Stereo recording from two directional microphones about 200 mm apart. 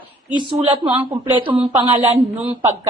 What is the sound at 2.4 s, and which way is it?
Speech, 30° right (ahead or behind).